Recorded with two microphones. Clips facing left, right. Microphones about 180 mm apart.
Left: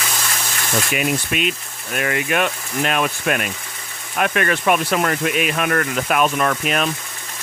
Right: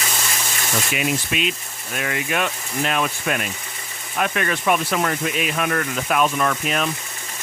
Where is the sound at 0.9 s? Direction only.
50° left (ahead or behind).